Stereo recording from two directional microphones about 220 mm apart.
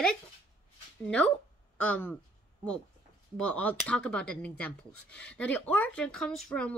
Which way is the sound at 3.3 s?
5° left (ahead or behind).